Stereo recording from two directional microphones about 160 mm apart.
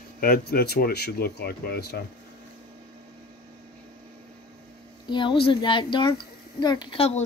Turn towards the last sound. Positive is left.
turn(degrees=40)  # may be behind; listen again after turning